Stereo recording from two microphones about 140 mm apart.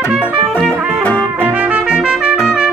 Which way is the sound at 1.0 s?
10° left (ahead or behind).